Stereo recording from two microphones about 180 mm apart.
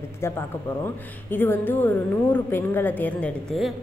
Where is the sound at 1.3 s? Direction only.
10° left (ahead or behind).